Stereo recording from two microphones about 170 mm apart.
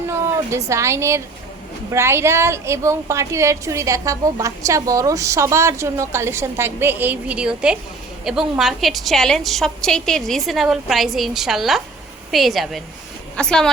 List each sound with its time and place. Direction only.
0.5 s a woman's voice: 15° right (ahead or behind); by 13.7 s 5° left (ahead or behind)